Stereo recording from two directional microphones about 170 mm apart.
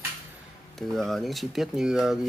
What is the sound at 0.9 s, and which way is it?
Speech, centre (ahead or behind).